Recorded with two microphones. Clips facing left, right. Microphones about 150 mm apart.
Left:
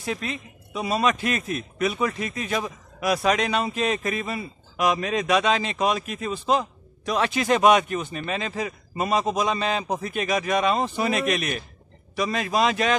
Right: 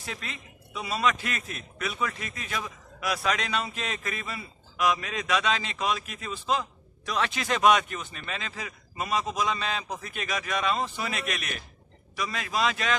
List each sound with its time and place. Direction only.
0.0 s a woman's voice: 15° left (ahead or behind)